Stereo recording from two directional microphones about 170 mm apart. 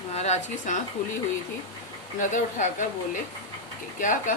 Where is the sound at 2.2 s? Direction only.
50° left (ahead or behind).